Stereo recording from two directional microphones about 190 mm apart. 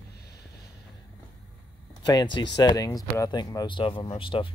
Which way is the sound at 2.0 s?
20° left (ahead or behind).